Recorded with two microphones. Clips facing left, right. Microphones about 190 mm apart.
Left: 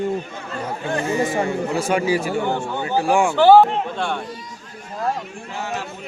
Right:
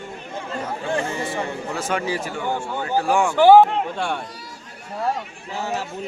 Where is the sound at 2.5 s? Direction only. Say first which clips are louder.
Left 2 dB; 10° right (ahead or behind).